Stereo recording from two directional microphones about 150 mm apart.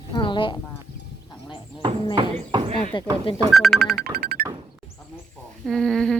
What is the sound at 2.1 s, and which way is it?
Speech, 35° right (ahead or behind).